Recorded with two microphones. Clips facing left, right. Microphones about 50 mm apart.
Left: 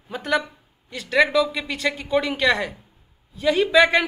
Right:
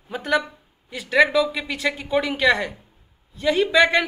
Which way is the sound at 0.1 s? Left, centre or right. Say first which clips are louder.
Right 1 dB; centre.